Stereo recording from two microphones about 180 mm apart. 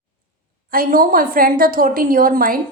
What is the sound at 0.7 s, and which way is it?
A woman's voice, 50° right (ahead or behind).